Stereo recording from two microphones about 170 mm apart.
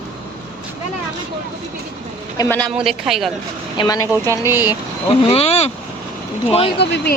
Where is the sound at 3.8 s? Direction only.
25° left (ahead or behind).